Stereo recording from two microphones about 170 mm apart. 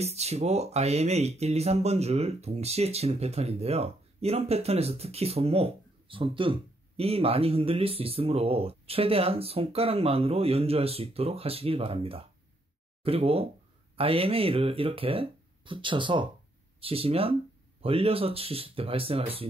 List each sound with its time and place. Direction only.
0.0 s speech: 40° right (ahead or behind)